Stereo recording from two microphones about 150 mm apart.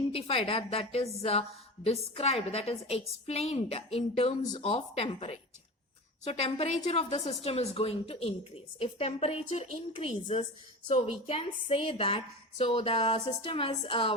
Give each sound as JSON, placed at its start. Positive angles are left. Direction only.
{"t": 0.1, "sound": "a woman's voice", "side_deg": 40}